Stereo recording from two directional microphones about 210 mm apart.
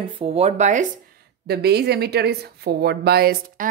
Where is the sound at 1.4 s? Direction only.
50° right (ahead or behind).